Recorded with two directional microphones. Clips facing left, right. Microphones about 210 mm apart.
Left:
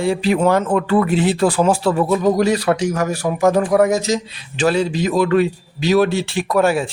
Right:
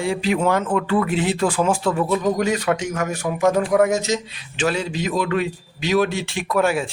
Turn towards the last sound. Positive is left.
turn(degrees=35)  # may be behind; listen again after turning